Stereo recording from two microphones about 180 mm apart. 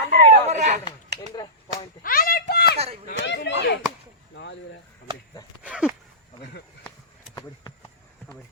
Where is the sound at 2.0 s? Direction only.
55° left (ahead or behind).